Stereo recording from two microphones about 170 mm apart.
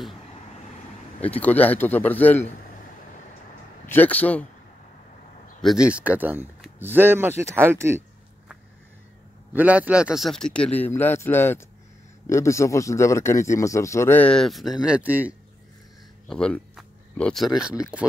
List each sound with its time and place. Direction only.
1.4 s a man's voice: 10° left (ahead or behind)
3.8 s a man's voice: 10° left (ahead or behind)
5.6 s speech: centre (ahead or behind)
9.5 s a man's voice: 10° right (ahead or behind)
16.3 s speech: 5° left (ahead or behind)